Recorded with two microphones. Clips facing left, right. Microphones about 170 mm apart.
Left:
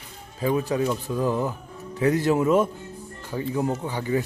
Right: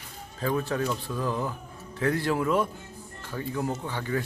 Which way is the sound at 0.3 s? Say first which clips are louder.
Left 4 dB; 15° left (ahead or behind).